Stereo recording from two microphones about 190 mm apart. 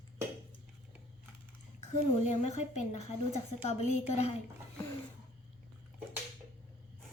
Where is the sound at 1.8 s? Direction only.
35° left (ahead or behind).